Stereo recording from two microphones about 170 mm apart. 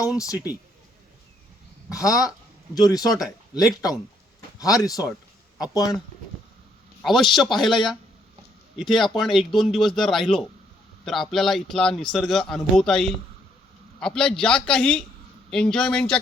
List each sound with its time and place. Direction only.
1.9 s speech: 20° left (ahead or behind)
7.0 s a man's voice: centre (ahead or behind)